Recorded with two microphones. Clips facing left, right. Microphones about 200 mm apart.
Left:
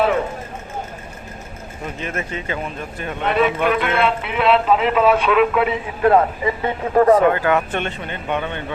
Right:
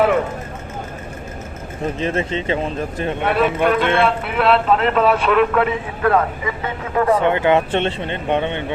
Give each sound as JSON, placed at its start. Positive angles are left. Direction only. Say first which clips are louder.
{"t": 2.0, "sound": "speech", "louder": "right 5 dB", "side_deg": -30}
{"t": 3.2, "sound": "speech", "louder": "even", "side_deg": 0}
{"t": 5.6, "sound": "a man's voice", "louder": "left 2 dB", "side_deg": 25}
{"t": 7.2, "sound": "speech", "louder": "right 1 dB", "side_deg": -25}